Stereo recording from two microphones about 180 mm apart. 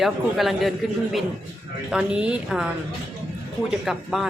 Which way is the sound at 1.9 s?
5° right (ahead or behind).